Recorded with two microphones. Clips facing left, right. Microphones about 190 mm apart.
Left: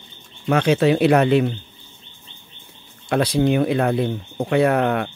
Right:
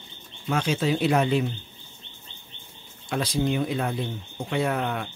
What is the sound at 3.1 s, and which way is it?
Speech, 65° left (ahead or behind).